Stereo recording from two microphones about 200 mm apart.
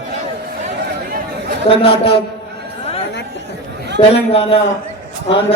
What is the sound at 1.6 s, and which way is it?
Speech, 25° left (ahead or behind).